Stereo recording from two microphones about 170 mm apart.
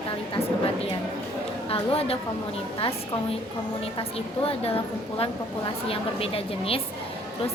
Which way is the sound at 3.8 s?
35° left (ahead or behind).